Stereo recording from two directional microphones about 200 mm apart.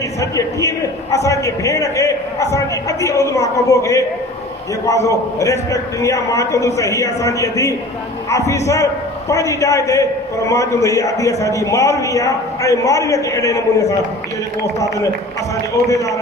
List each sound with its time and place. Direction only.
0.2 s a man's voice: 15° left (ahead or behind)